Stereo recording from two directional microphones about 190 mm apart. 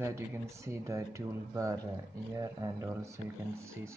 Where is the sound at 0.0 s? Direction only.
15° right (ahead or behind).